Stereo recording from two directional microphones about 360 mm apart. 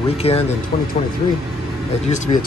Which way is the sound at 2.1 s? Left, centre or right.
Left.